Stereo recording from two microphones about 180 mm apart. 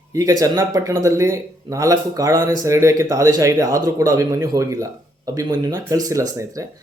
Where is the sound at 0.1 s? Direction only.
15° right (ahead or behind).